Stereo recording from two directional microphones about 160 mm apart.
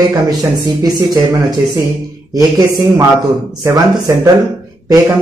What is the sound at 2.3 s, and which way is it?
Speech, 25° right (ahead or behind).